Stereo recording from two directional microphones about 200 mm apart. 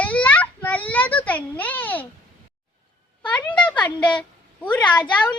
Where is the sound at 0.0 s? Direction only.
5° left (ahead or behind).